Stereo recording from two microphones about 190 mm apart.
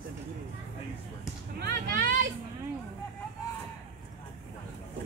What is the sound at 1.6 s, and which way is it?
Vehicle, 55° right (ahead or behind).